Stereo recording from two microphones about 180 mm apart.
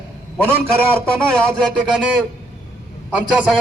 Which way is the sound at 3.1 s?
5° right (ahead or behind).